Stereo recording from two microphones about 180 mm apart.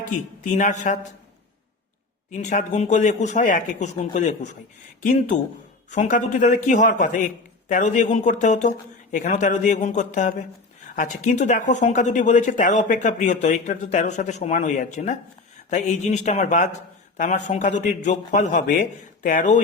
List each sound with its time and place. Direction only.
0.0 s speech: 45° left (ahead or behind)
2.3 s speech: 40° left (ahead or behind)